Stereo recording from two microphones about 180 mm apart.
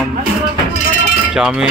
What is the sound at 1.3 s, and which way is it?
Speech, 5° right (ahead or behind).